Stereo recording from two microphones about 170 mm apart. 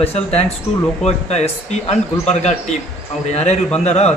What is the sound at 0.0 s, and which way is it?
A man's voice, 40° left (ahead or behind).